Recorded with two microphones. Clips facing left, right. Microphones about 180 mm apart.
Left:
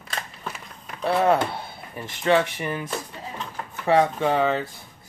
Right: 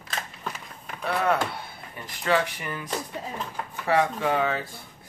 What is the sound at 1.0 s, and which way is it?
Speech, 30° left (ahead or behind).